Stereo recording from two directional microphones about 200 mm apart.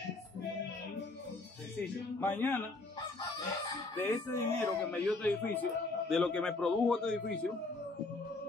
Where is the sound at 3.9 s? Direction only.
10° left (ahead or behind).